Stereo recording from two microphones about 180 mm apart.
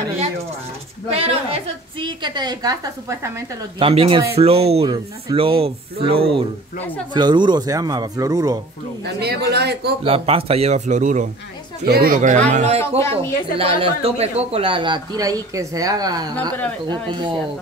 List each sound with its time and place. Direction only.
1.1 s a man's voice: 35° right (ahead or behind); by 3.3 s 20° right (ahead or behind)
3.8 s a man's voice: 30° right (ahead or behind)
9.0 s a woman's voice: 65° right (ahead or behind)
10.0 s speech: 30° right (ahead or behind)
11.8 s speech: 60° right (ahead or behind); by 12.8 s 40° right (ahead or behind)
12.8 s speech: 15° left (ahead or behind)
13.6 s a man's voice: 30° right (ahead or behind)